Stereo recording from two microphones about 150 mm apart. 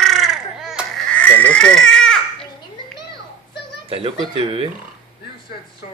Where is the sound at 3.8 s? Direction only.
40° right (ahead or behind).